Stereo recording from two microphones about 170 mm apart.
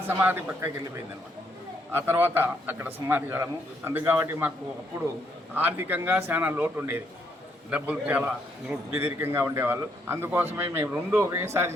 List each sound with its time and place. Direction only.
0.2 s a man's voice: 10° right (ahead or behind)
1.9 s a man's voice: 15° right (ahead or behind)
5.5 s a man's voice: 10° right (ahead or behind)